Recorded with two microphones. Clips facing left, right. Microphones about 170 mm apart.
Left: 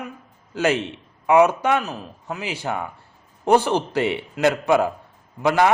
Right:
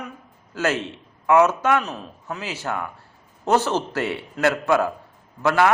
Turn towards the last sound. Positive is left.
turn(degrees=15)  # may be behind; listen again after turning